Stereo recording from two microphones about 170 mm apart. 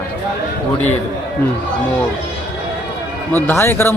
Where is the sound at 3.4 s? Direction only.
15° left (ahead or behind).